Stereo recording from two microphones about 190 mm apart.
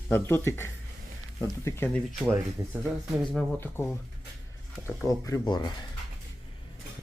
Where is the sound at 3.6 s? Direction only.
10° left (ahead or behind).